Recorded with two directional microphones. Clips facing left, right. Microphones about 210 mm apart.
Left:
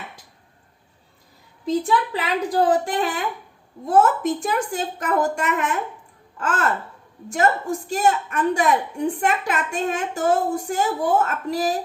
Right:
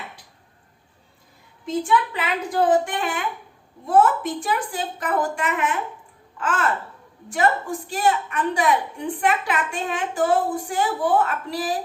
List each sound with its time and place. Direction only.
1.6 s a woman's voice: 35° left (ahead or behind)
7.9 s a woman's voice: 45° left (ahead or behind)